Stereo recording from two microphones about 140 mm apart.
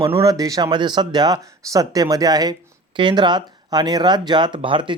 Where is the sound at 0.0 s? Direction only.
25° right (ahead or behind).